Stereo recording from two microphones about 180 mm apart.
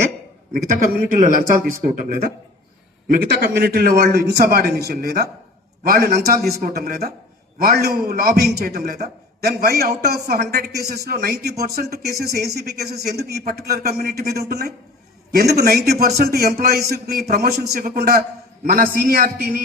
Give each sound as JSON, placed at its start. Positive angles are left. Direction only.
{"t": 1.2, "sound": "speech", "side_deg": -50}
{"t": 3.2, "sound": "a man's voice", "side_deg": -60}